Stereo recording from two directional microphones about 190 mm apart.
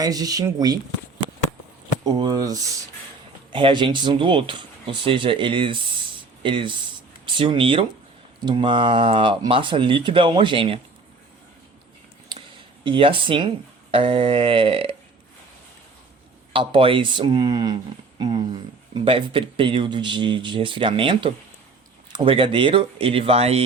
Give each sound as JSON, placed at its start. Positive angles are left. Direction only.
{"t": 0.0, "sound": "speech", "side_deg": -20}
{"t": 2.0, "sound": "speech", "side_deg": -20}
{"t": 12.8, "sound": "speech", "side_deg": -25}
{"t": 16.5, "sound": "speech", "side_deg": -25}